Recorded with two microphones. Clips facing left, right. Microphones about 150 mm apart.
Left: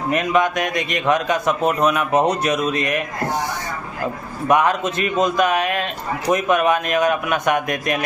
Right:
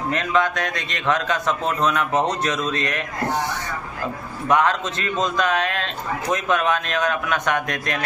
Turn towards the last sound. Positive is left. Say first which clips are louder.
# left 4 dB
turn(degrees=10)  # may be behind; listen again after turning